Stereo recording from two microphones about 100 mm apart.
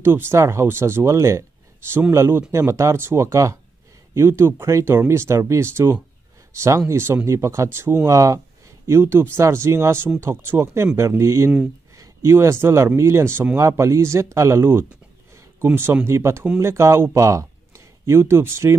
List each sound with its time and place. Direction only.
0.0 s speech: 25° right (ahead or behind)